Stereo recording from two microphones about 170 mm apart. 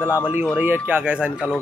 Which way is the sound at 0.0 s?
10° right (ahead or behind).